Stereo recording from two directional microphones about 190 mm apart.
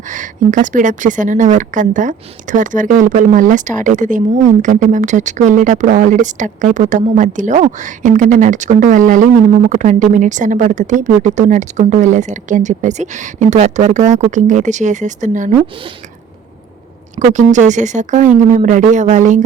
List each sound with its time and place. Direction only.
0.1 s a woman's voice: 40° right (ahead or behind)
17.2 s a woman's voice: 40° right (ahead or behind)